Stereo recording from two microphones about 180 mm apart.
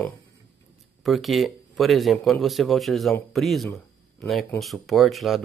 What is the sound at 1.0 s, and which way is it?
Speech, centre (ahead or behind).